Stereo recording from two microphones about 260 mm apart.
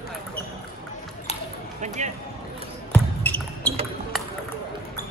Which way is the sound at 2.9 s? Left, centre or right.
Centre.